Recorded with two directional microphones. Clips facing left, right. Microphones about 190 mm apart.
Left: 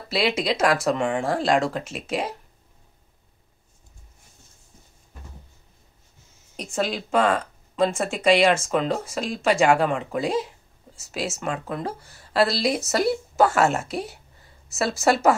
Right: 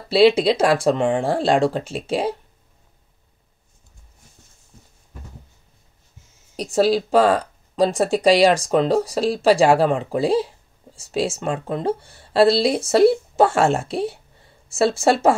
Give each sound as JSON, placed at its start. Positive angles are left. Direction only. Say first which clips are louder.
{"t": 0.1, "sound": "speech", "louder": "right 9 dB", "side_deg": -30}
{"t": 6.5, "sound": "speech", "louder": "right 9 dB", "side_deg": -35}